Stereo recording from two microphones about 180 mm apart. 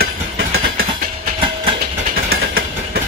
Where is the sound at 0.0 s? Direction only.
60° right (ahead or behind).